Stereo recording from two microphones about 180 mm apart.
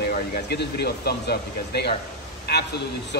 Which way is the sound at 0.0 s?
65° left (ahead or behind).